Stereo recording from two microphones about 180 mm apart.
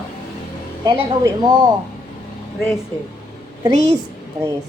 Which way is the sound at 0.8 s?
25° right (ahead or behind).